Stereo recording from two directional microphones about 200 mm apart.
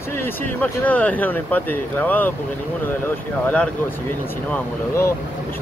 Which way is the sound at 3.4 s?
5° left (ahead or behind).